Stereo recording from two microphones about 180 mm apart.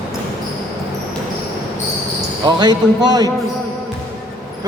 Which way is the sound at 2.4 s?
25° right (ahead or behind).